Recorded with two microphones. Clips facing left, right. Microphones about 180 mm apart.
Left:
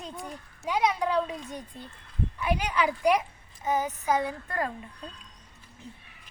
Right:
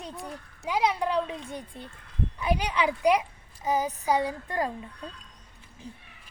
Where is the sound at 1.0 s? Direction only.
15° right (ahead or behind).